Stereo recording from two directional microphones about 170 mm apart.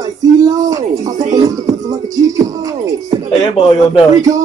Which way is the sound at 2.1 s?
20° right (ahead or behind).